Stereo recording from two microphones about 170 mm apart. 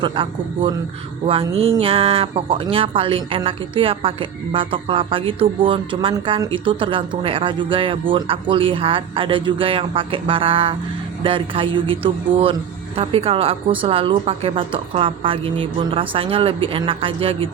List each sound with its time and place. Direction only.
0.0 s a man's voice: 30° right (ahead or behind)